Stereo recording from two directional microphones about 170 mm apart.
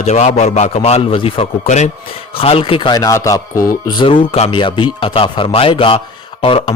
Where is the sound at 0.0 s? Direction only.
40° left (ahead or behind); by 3.7 s 20° left (ahead or behind).